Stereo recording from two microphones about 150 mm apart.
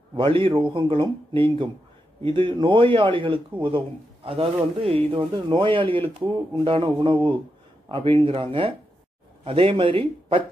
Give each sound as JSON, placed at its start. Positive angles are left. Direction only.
{"t": 0.2, "sound": "speech", "side_deg": -35}